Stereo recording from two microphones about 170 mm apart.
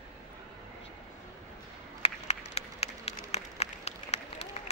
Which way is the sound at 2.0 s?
40° left (ahead or behind).